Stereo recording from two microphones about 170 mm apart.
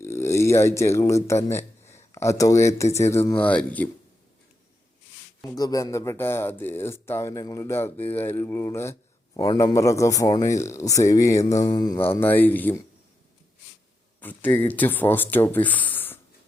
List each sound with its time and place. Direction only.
0.0 s speech: 15° left (ahead or behind)
5.5 s speech: 20° left (ahead or behind)
14.2 s speech: 10° left (ahead or behind)